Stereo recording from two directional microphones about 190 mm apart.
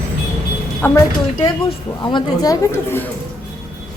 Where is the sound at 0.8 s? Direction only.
15° left (ahead or behind).